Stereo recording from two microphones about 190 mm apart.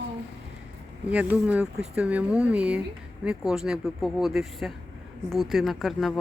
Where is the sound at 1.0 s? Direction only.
5° right (ahead or behind).